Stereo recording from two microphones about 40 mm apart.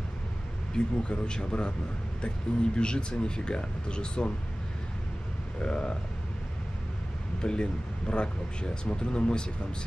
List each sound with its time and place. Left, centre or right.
0.7 s speech: left
5.6 s speech: left
7.4 s speech: left